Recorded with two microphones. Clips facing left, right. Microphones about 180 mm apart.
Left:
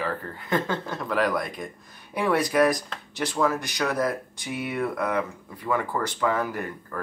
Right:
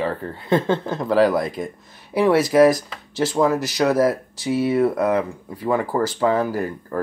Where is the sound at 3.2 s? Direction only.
35° right (ahead or behind).